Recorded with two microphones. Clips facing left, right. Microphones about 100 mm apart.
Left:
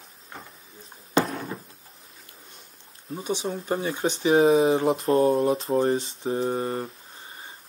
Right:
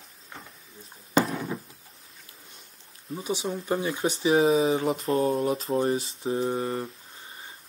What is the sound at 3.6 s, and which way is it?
Speech, 25° left (ahead or behind).